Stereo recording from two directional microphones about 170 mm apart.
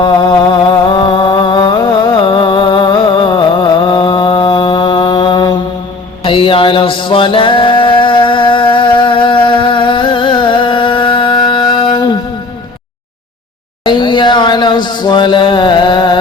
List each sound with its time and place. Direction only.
0.0 s music: 25° left (ahead or behind)
6.2 s mantra: 30° left (ahead or behind)
13.8 s a sound: 30° left (ahead or behind)